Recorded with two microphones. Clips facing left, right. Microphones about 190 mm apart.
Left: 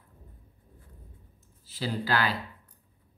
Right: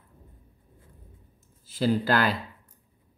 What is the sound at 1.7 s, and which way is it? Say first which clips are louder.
Speech: right 6 dB; 50° right (ahead or behind).